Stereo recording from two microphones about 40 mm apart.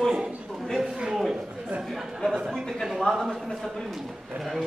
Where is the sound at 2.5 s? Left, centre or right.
Centre.